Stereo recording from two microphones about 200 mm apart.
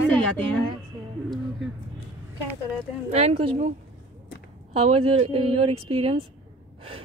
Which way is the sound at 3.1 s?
30° right (ahead or behind).